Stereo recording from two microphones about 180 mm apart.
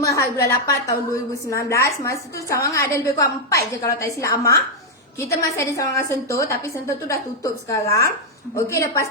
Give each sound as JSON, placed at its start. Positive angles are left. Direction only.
{"t": 0.0, "sound": "a woman's voice", "side_deg": 15}